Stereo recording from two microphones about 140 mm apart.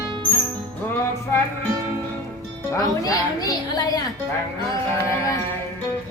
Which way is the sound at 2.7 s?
25° left (ahead or behind).